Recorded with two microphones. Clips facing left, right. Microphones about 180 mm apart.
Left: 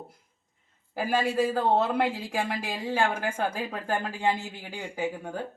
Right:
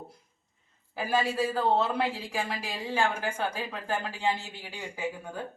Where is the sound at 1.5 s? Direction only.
50° left (ahead or behind).